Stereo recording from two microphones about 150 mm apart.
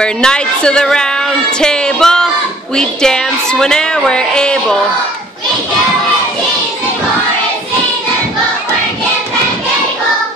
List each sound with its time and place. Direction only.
0.0 s speech: 5° left (ahead or behind)